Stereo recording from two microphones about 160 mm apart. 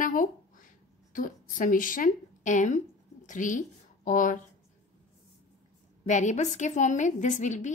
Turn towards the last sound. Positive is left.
turn(degrees=50)  # may be behind; listen again after turning